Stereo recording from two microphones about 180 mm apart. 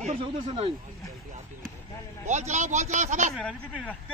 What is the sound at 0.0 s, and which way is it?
Speech, 35° right (ahead or behind).